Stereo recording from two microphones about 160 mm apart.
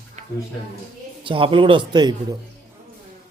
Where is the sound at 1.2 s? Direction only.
30° right (ahead or behind).